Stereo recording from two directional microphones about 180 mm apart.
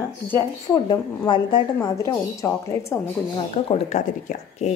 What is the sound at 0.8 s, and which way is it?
Speech, 25° left (ahead or behind).